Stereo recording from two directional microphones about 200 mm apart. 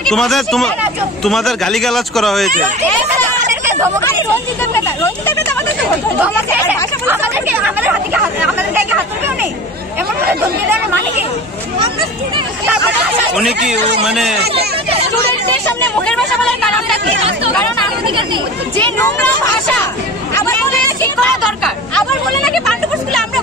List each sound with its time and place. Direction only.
0.0 s speech: centre (ahead or behind)
4.7 s speech: 10° left (ahead or behind)
7.1 s speech: 10° right (ahead or behind)
14.0 s speech: centre (ahead or behind)
18.0 s speech: 25° right (ahead or behind)
18.8 s speech: 10° left (ahead or behind)
20.3 s speech: 15° left (ahead or behind)